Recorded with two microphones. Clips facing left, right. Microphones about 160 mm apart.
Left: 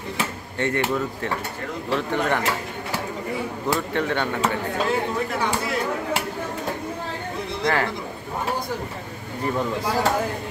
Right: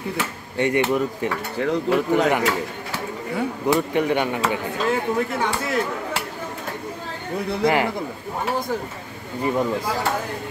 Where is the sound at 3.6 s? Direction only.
15° right (ahead or behind).